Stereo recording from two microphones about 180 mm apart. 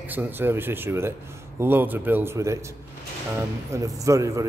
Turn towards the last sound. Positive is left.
turn(degrees=-20)  # may be behind; listen again after turning